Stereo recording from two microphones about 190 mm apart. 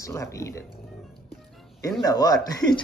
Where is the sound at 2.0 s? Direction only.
20° left (ahead or behind).